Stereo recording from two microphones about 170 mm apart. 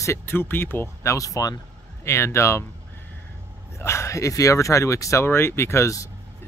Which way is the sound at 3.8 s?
15° left (ahead or behind).